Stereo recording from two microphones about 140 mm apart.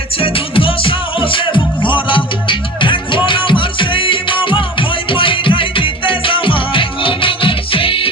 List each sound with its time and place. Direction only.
0.2 s music: 40° left (ahead or behind)